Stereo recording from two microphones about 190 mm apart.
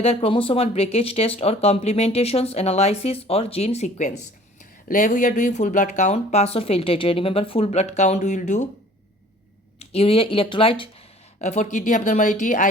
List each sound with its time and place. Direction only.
0.0 s speech: 30° left (ahead or behind)
9.7 s speech: 30° left (ahead or behind)